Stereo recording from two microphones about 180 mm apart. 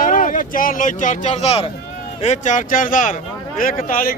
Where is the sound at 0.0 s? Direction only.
50° left (ahead or behind).